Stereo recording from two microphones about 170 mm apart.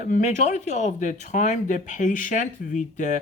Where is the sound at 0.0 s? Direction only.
45° left (ahead or behind).